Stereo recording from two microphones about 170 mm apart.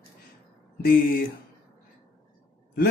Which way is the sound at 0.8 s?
55° left (ahead or behind).